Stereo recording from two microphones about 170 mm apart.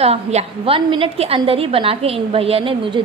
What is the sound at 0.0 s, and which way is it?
A woman's voice, 40° right (ahead or behind).